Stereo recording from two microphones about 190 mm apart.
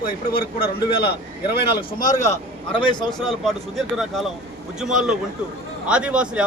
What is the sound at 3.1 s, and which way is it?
A man's voice, centre (ahead or behind).